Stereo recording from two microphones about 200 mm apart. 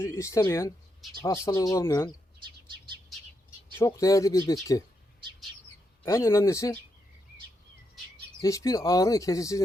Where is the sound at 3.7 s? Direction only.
15° left (ahead or behind).